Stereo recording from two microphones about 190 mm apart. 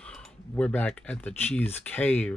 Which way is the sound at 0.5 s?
10° left (ahead or behind).